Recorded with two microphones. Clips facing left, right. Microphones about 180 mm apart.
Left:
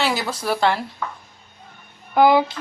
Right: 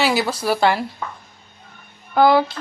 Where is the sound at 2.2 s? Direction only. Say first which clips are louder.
Even; 15° left (ahead or behind).